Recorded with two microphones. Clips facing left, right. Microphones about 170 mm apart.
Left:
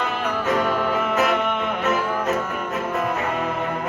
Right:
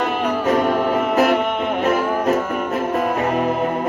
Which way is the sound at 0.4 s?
40° right (ahead or behind).